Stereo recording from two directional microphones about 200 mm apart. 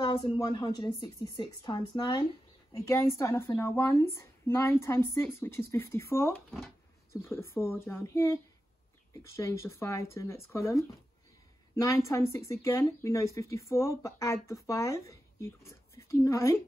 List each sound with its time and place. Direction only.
0.0 s a woman's voice: 20° left (ahead or behind)